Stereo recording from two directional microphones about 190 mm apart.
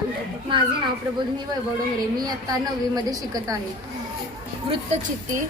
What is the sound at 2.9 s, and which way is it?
Speech, 20° right (ahead or behind).